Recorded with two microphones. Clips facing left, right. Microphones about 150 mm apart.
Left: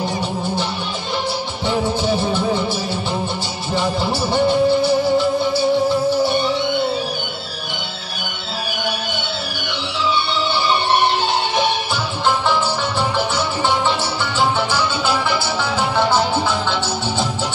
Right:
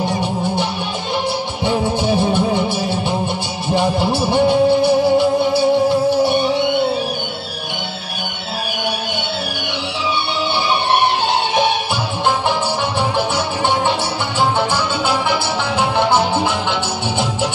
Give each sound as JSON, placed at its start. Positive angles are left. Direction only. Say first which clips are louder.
{"t": 2.1, "sound": "music", "louder": "right 3 dB", "side_deg": -15}
{"t": 3.7, "sound": "music", "louder": "right 4 dB", "side_deg": -55}
{"t": 16.0, "sound": "music", "louder": "right 1 dB", "side_deg": -20}